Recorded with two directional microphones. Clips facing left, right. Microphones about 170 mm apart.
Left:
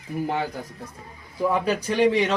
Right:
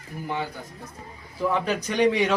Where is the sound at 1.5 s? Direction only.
5° left (ahead or behind).